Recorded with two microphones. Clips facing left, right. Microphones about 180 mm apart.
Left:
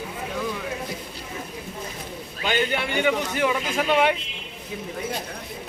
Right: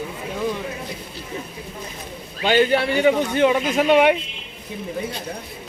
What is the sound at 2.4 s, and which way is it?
A man's voice, 35° right (ahead or behind).